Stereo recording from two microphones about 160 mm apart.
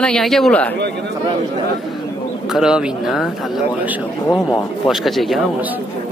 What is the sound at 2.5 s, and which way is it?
Speech, 5° right (ahead or behind).